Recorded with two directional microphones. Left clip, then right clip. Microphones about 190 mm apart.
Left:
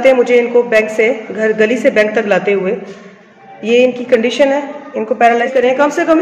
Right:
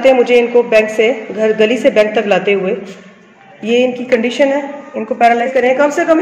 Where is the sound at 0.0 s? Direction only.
5° right (ahead or behind).